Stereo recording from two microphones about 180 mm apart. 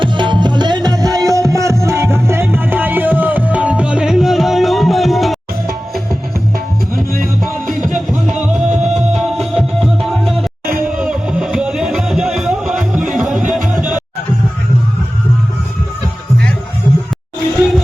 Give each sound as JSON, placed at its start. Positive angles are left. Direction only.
{"t": 0.0, "sound": "music", "side_deg": -25}
{"t": 6.9, "sound": "music", "side_deg": -50}
{"t": 7.4, "sound": "music", "side_deg": 0}
{"t": 8.7, "sound": "music", "side_deg": -40}
{"t": 9.0, "sound": "music", "side_deg": 0}